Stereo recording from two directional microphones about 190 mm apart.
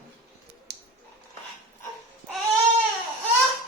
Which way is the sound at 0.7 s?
65° right (ahead or behind).